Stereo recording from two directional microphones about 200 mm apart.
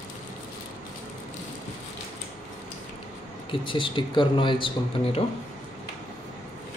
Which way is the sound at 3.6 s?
25° left (ahead or behind).